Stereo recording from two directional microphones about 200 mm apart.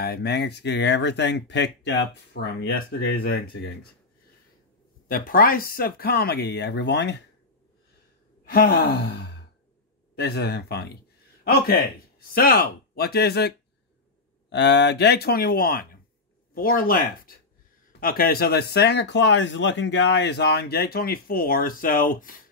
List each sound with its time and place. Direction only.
0.0 s speech: 55° left (ahead or behind)
5.0 s speech: 45° left (ahead or behind)
8.5 s speech: 50° left (ahead or behind)
14.5 s speech: 60° left (ahead or behind)
18.0 s speech: 50° left (ahead or behind)